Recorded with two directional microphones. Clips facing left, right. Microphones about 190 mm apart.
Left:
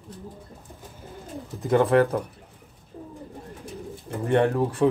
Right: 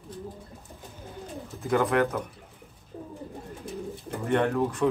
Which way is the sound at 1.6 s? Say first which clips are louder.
Left 5 dB; 30° left (ahead or behind).